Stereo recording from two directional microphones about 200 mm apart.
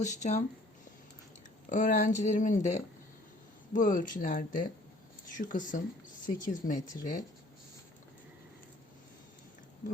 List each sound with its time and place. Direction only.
0.0 s speech: 35° left (ahead or behind)
1.7 s speech: 40° left (ahead or behind)